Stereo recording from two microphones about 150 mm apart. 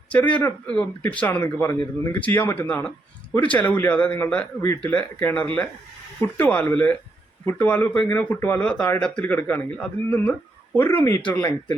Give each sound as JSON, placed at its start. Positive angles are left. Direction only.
{"t": 0.1, "sound": "speech", "side_deg": 10}